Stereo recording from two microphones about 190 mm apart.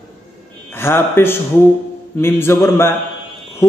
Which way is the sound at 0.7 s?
10° left (ahead or behind).